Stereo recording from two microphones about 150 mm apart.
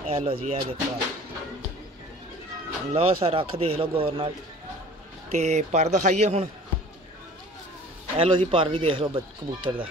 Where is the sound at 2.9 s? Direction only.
40° right (ahead or behind).